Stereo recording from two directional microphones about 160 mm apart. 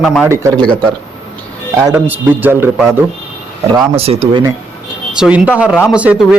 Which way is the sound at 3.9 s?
35° right (ahead or behind).